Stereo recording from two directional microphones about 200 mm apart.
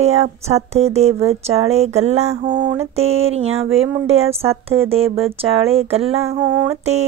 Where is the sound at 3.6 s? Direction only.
80° right.